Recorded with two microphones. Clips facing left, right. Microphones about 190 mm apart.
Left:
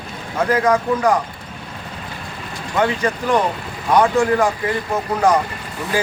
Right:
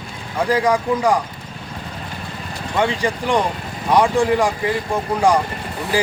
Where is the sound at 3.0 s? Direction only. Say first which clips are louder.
Left 1 dB; 15° right (ahead or behind).